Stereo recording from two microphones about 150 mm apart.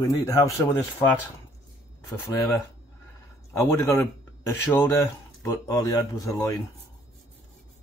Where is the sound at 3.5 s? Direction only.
20° left (ahead or behind).